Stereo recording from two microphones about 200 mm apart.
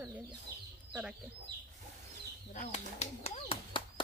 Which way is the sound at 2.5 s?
30° left (ahead or behind).